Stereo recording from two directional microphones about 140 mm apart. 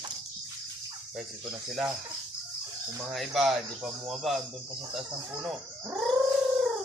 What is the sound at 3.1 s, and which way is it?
Speech, centre (ahead or behind).